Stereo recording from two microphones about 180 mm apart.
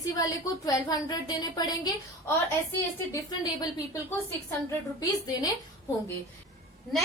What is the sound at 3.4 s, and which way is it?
A woman's voice, 20° left (ahead or behind).